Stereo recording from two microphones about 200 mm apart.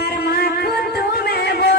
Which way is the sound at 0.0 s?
50° left (ahead or behind).